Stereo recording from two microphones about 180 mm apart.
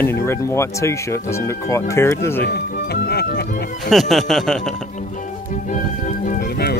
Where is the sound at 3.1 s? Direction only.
60° left (ahead or behind).